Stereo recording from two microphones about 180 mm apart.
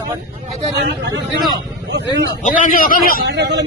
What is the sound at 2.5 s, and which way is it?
Speech, 45° left (ahead or behind).